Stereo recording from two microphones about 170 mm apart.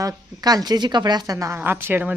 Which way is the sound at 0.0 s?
20° right (ahead or behind).